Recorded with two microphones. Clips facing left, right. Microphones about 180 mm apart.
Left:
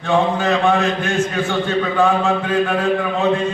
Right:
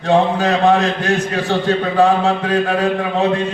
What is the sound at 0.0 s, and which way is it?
A man's voice, 40° right (ahead or behind).